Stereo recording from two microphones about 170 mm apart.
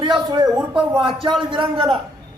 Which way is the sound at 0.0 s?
30° right (ahead or behind).